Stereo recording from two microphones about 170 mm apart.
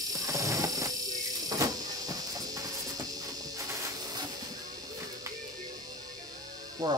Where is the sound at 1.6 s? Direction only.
20° right (ahead or behind).